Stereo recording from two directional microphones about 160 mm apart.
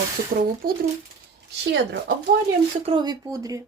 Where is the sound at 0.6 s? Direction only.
65° right (ahead or behind).